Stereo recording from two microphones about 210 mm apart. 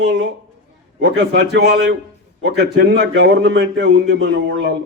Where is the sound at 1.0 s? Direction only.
55° right (ahead or behind).